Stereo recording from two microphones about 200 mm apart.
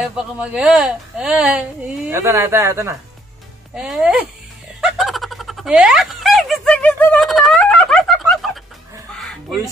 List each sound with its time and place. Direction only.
0.0 s speech: 5° right (ahead or behind)
3.7 s speech: centre (ahead or behind)
4.7 s a sound: centre (ahead or behind)
9.2 s music: centre (ahead or behind)